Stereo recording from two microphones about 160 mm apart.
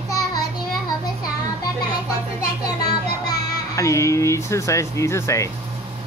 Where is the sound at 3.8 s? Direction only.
20° left (ahead or behind).